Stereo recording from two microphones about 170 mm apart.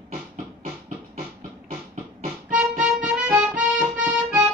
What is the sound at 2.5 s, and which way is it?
Music, 5° right (ahead or behind).